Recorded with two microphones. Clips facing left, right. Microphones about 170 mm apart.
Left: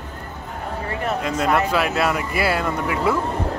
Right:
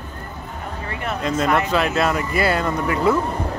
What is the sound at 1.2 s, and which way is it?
Speech, 5° left (ahead or behind).